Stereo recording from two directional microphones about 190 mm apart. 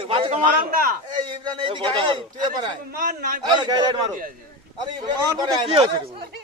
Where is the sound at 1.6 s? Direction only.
25° right (ahead or behind).